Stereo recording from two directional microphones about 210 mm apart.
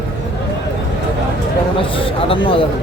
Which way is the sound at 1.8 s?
25° left (ahead or behind).